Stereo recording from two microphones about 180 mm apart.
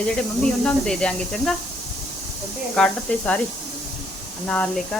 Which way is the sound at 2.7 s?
5° left (ahead or behind).